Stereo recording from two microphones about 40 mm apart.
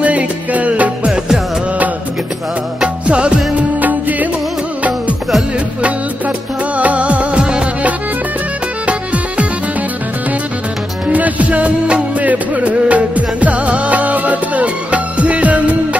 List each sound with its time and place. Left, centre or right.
0.0 s music: right
1.0 s music: centre
2.8 s music: right
5.8 s music: right
6.8 s music of bollywood: right
8.8 s music: right
11.1 s music: right